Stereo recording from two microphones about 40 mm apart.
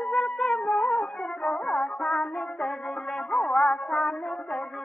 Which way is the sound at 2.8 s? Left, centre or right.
Centre.